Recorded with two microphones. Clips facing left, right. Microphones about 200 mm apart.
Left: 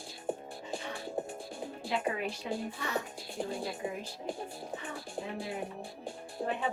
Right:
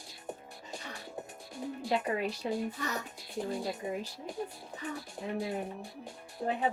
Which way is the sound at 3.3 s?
30° left (ahead or behind).